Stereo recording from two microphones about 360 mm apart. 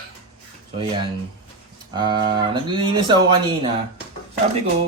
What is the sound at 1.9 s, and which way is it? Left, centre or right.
Speech, centre.